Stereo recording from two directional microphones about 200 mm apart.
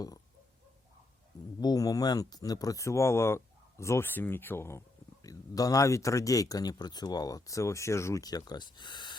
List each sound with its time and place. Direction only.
1.6 s speech: 20° left (ahead or behind)